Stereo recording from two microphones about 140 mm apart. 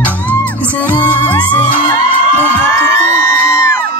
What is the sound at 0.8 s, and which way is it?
Music, 15° right (ahead or behind).